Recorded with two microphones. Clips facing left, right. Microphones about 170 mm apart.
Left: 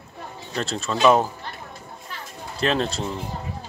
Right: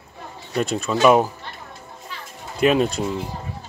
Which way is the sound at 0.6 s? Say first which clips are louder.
Right 4 dB; 15° right (ahead or behind).